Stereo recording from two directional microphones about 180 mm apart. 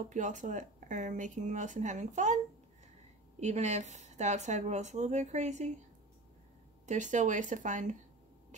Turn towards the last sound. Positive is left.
turn(degrees=-45)  # may be behind; listen again after turning